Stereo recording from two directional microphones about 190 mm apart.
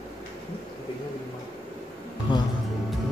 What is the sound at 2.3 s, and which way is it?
Music, 25° left (ahead or behind).